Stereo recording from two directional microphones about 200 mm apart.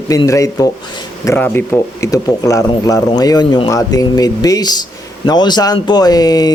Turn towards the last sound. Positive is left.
turn(degrees=20)  # may be behind; listen again after turning